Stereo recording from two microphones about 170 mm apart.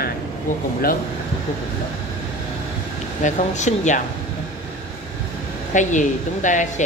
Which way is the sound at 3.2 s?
45° left (ahead or behind).